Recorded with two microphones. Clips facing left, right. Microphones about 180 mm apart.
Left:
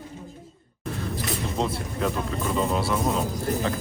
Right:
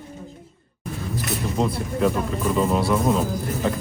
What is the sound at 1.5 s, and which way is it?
Speech, 5° right (ahead or behind).